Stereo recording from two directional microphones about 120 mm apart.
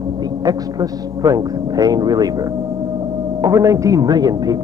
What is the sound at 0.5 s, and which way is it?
A man's voice, 30° right (ahead or behind).